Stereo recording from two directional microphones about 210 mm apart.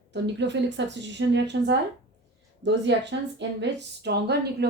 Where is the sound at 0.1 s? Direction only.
55° right (ahead or behind).